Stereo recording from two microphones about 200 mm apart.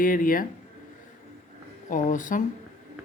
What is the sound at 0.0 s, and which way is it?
Speech, 45° left (ahead or behind).